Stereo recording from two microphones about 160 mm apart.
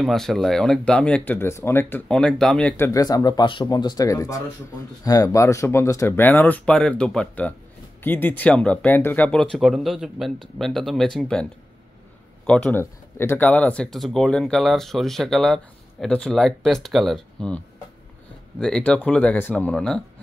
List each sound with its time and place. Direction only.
0.0 s speech: centre (ahead or behind)
2.8 s speech: 20° left (ahead or behind); by 11.4 s 5° left (ahead or behind)
12.4 s speech: 5° left (ahead or behind)
18.6 s speech: 5° left (ahead or behind)